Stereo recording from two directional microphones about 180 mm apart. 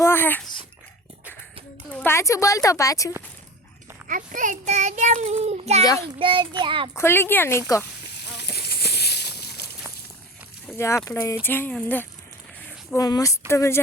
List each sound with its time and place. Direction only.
0.0 s speech: 10° left (ahead or behind)
1.9 s speech: 10° left (ahead or behind)
4.1 s a child's voice: 45° right (ahead or behind); by 6.9 s 25° right (ahead or behind)
6.9 s speech: 15° left (ahead or behind)
8.2 s a sound: 70° left (ahead or behind)
10.8 s speech: 15° left (ahead or behind)